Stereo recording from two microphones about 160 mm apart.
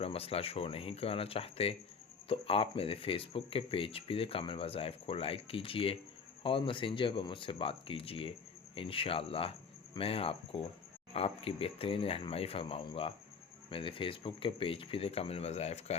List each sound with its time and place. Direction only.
0.0 s speech: 35° left (ahead or behind)